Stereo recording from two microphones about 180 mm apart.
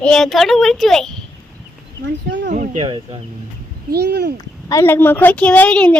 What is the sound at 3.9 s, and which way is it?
Speech, 65° right (ahead or behind).